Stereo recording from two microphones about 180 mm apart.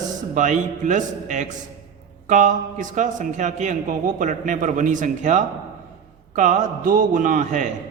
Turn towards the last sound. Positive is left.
turn(degrees=-45)  # may be behind; listen again after turning